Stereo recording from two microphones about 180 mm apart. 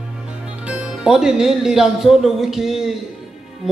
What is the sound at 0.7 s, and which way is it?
Speech, 5° right (ahead or behind).